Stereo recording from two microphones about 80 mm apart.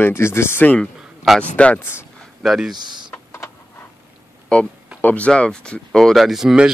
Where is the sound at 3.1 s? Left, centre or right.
Left.